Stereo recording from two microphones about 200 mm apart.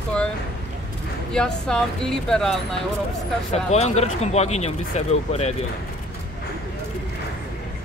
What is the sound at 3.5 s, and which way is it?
Speech, 35° left (ahead or behind).